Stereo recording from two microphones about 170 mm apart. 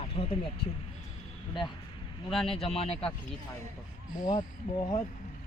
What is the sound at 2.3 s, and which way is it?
Speech, centre (ahead or behind).